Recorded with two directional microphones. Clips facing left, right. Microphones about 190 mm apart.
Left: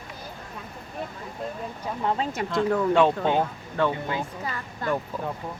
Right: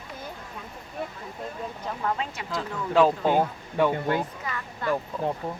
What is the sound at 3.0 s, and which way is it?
Speech, 5° right (ahead or behind).